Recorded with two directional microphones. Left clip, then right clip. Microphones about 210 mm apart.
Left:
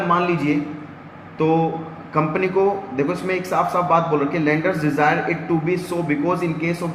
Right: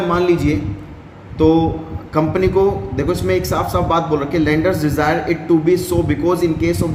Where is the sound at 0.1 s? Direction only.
65° right (ahead or behind).